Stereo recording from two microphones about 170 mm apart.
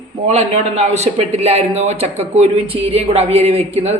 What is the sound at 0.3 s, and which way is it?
A man's voice, 40° right (ahead or behind).